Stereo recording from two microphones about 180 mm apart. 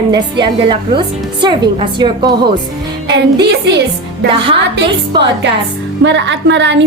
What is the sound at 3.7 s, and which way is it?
Speech, 70° right (ahead or behind).